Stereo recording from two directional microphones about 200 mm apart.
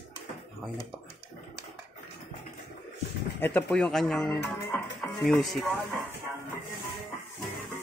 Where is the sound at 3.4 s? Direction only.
5° left (ahead or behind).